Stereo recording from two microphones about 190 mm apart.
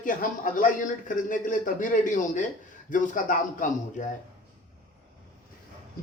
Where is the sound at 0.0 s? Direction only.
45° left (ahead or behind).